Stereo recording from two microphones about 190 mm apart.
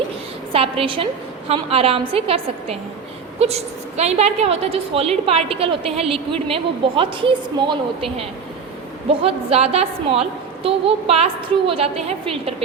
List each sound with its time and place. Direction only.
0.5 s a woman's voice: 30° right (ahead or behind)